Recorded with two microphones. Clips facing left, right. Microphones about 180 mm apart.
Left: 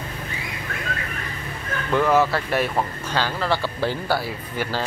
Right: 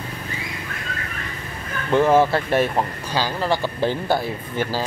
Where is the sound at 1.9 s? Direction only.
25° right (ahead or behind).